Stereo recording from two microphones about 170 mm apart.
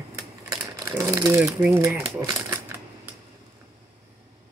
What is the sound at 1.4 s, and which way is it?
Speech, 15° right (ahead or behind).